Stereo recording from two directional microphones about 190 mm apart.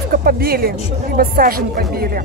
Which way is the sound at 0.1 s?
50° right (ahead or behind).